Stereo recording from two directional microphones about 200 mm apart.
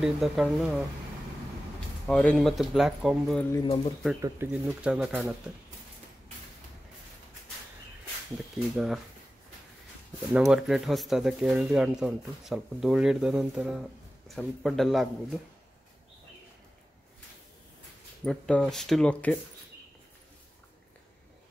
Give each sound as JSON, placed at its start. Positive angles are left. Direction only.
{"t": 0.0, "sound": "speech", "side_deg": 0}
{"t": 2.0, "sound": "speech", "side_deg": 5}
{"t": 3.6, "sound": "speech", "side_deg": 30}
{"t": 4.2, "sound": "speech", "side_deg": -10}
{"t": 8.7, "sound": "speech", "side_deg": 0}
{"t": 10.3, "sound": "speech", "side_deg": -5}
{"t": 18.2, "sound": "speech", "side_deg": 5}